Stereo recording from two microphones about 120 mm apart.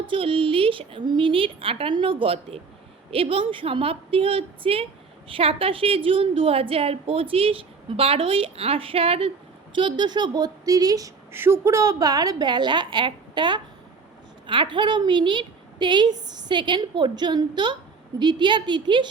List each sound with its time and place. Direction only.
0.0 s a woman's voice: 45° right (ahead or behind)
9.7 s a woman's voice: 40° right (ahead or behind)